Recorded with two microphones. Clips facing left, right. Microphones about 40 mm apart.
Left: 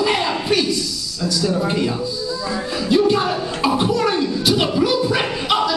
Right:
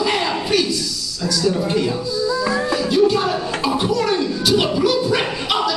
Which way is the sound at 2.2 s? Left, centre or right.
Right.